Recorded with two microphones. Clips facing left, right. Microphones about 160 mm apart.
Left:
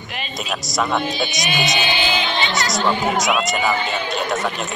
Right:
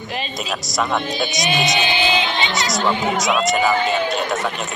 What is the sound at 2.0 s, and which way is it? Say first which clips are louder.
Music: right 1 dB; 20° right (ahead or behind).